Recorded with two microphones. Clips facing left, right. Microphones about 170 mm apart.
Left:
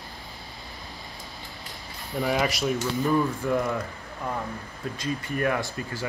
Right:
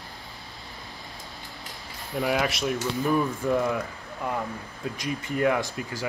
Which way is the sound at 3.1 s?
15° right (ahead or behind).